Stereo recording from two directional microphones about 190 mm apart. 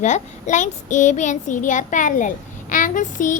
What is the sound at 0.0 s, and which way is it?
A child's voice, 40° left (ahead or behind).